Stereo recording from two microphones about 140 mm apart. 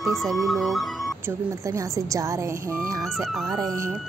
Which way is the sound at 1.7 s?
20° right (ahead or behind).